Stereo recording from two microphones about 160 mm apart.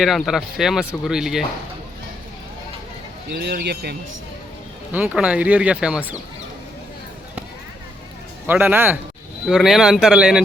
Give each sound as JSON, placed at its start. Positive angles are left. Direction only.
{"t": 0.0, "sound": "speech", "side_deg": 0}
{"t": 3.3, "sound": "speech", "side_deg": -90}
{"t": 4.9, "sound": "speech", "side_deg": -10}
{"t": 8.4, "sound": "speech", "side_deg": -10}
{"t": 9.5, "sound": "speech", "side_deg": 0}